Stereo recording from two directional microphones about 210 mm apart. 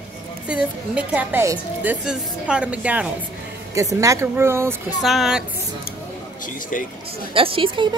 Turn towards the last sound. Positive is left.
turn(degrees=-25)  # may be behind; listen again after turning